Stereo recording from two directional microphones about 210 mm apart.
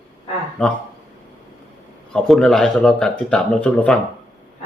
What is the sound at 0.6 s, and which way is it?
Speech, 5° left (ahead or behind).